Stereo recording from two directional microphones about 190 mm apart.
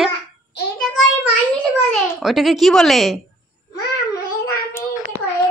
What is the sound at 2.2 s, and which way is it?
A woman's voice, centre (ahead or behind).